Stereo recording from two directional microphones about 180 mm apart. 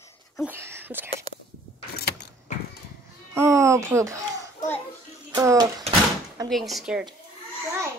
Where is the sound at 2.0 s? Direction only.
60° left (ahead or behind).